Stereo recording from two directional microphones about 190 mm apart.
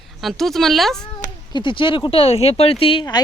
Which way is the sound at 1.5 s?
25° left (ahead or behind).